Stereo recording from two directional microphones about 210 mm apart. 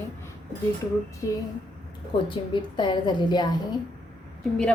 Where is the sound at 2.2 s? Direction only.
20° left (ahead or behind).